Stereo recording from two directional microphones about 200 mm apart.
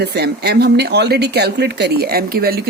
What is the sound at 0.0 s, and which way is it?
Speech, 55° right (ahead or behind).